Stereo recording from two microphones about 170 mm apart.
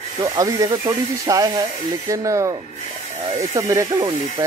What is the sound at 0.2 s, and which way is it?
Speech, 20° right (ahead or behind).